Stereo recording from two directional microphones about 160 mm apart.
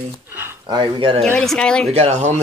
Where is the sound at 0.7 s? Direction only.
30° right (ahead or behind).